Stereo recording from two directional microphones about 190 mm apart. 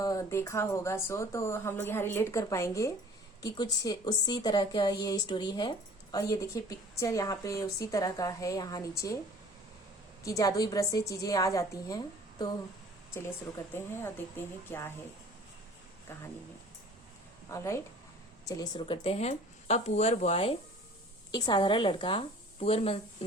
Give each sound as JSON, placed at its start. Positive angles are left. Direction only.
{"t": 0.0, "sound": "a woman's voice", "side_deg": 15}
{"t": 10.2, "sound": "speech", "side_deg": 20}
{"t": 13.7, "sound": "speech", "side_deg": 10}
{"t": 17.5, "sound": "speech", "side_deg": 15}
{"t": 21.3, "sound": "a woman's voice", "side_deg": 20}